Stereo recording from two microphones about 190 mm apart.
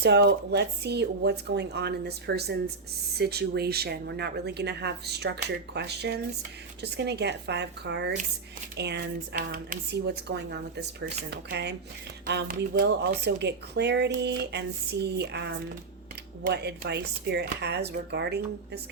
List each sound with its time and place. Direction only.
0.0 s speech: 60° right (ahead or behind)